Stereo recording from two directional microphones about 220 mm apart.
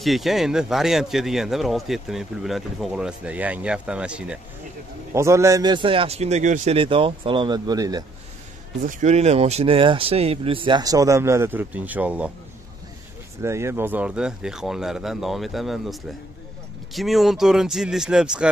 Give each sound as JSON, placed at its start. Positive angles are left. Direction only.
{"t": 0.0, "sound": "speech", "side_deg": 0}
{"t": 8.8, "sound": "speech", "side_deg": -30}
{"t": 13.4, "sound": "speech", "side_deg": -10}